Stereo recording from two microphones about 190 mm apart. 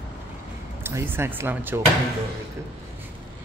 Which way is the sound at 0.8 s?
15° right (ahead or behind).